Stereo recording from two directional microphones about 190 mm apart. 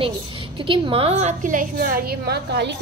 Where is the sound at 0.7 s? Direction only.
30° right (ahead or behind).